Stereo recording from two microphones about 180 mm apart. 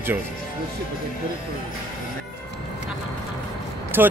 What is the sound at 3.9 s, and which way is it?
Speech, 10° right (ahead or behind).